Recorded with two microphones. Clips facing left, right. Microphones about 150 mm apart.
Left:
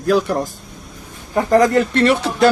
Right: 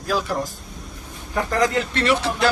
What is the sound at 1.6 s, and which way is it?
Speech, 50° left (ahead or behind).